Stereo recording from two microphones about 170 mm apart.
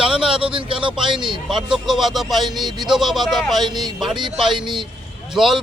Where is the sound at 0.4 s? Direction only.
30° right (ahead or behind).